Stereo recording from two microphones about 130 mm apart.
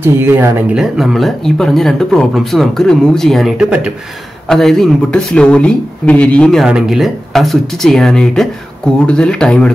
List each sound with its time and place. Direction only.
0.0 s speech: 15° right (ahead or behind)
0.7 s speech: centre (ahead or behind)
6.6 s speech: centre (ahead or behind)